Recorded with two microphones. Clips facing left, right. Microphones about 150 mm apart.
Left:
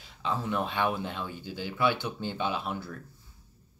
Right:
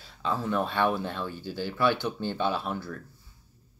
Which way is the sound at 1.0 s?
15° left (ahead or behind).